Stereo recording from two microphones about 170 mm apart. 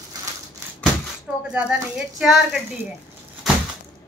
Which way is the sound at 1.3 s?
5° right (ahead or behind).